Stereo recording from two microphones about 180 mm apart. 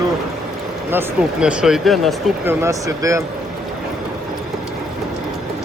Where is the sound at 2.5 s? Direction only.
15° right (ahead or behind).